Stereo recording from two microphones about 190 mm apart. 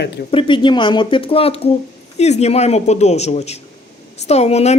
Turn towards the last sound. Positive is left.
turn(degrees=35)  # may be behind; listen again after turning